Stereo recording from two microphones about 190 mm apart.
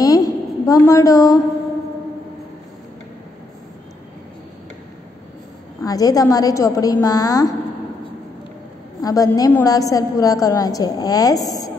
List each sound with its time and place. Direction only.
0.0 s a sound: 20° left (ahead or behind)
5.8 s a woman's voice: 20° left (ahead or behind)
9.0 s a woman's voice: 20° left (ahead or behind)